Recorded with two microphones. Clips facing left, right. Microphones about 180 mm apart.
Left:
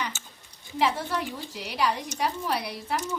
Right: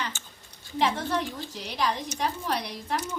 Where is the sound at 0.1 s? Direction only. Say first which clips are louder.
Left 1 dB; 5° left (ahead or behind).